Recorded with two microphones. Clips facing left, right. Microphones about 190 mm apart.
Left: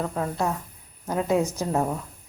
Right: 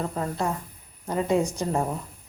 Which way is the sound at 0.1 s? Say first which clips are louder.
Left 1 dB; centre (ahead or behind).